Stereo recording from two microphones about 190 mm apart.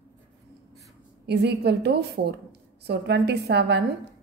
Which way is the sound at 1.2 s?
60° right (ahead or behind).